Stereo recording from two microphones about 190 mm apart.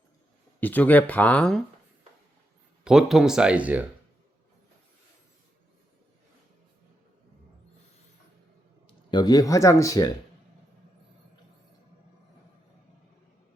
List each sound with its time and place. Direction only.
0.6 s speech: 10° left (ahead or behind)
2.8 s speech: centre (ahead or behind)
8.9 s speech: 25° left (ahead or behind)